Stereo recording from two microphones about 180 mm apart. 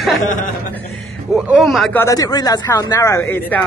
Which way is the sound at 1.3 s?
Centre (ahead or behind).